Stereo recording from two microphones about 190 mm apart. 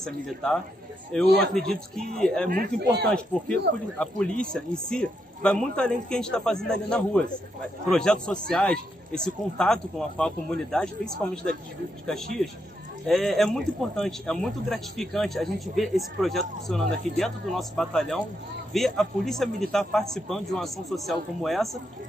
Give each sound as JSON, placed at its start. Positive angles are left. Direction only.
{"t": 0.0, "sound": "speech", "side_deg": 0}
{"t": 2.5, "sound": "speech", "side_deg": -55}
{"t": 4.0, "sound": "speech", "side_deg": 5}
{"t": 13.0, "sound": "speech", "side_deg": 0}